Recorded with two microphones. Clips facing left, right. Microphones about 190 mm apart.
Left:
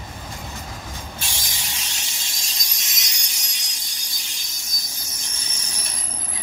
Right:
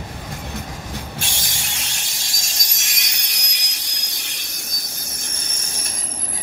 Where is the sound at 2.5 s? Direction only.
60° right (ahead or behind).